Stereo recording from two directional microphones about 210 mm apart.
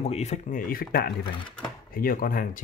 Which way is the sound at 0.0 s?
30° left (ahead or behind).